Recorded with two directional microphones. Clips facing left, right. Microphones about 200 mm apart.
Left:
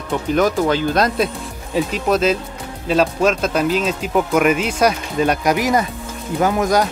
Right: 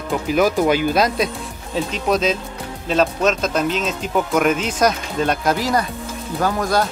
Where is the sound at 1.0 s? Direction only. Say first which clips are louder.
Left 1 dB; centre (ahead or behind); by 6.9 s 15° left (ahead or behind).